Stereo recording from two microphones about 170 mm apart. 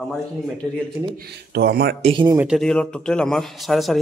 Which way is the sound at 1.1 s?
70° right (ahead or behind).